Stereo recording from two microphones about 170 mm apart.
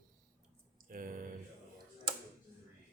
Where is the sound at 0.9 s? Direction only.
55° right (ahead or behind).